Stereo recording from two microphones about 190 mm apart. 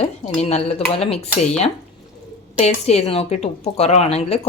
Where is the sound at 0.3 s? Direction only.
30° left (ahead or behind).